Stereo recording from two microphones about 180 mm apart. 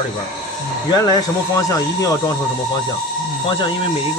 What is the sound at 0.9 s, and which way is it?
Speech, 20° left (ahead or behind).